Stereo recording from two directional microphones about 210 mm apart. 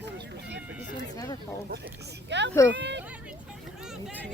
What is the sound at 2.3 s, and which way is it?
Speech, 55° right (ahead or behind).